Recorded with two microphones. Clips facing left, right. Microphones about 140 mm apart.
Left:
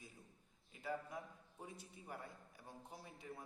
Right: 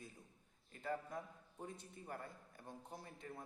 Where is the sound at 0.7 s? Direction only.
5° left (ahead or behind).